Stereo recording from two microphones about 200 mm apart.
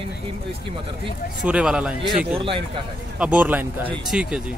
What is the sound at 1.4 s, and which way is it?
A man's voice, 5° right (ahead or behind).